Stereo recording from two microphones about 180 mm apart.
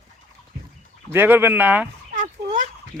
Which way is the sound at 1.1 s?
10° right (ahead or behind).